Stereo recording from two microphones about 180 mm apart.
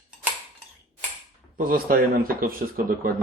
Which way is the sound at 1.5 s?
55° right (ahead or behind).